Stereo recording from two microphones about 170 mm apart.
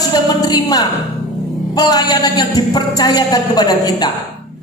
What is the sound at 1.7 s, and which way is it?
A man's voice, 20° left (ahead or behind).